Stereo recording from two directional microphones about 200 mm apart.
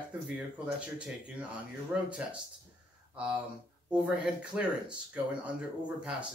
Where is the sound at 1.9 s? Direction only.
5° right (ahead or behind).